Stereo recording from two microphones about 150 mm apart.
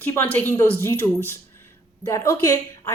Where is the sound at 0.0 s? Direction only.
10° left (ahead or behind).